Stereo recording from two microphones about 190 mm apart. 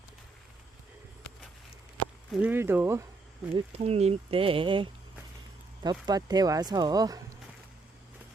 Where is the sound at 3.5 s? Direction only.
35° right (ahead or behind).